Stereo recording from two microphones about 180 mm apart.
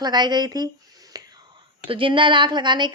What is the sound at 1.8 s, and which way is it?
A woman's voice, 30° right (ahead or behind).